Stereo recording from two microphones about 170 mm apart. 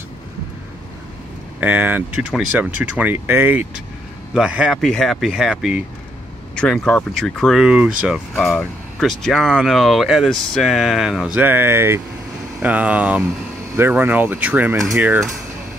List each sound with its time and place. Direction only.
1.6 s speech: 10° right (ahead or behind)